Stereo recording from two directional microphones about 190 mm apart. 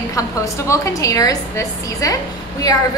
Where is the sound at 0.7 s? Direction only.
15° left (ahead or behind).